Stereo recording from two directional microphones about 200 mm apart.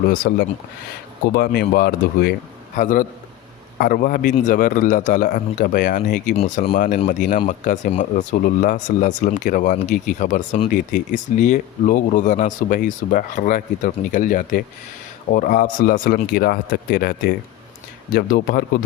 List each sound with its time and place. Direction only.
0.1 s speech: 45° left (ahead or behind)
2.7 s speech: 40° left (ahead or behind)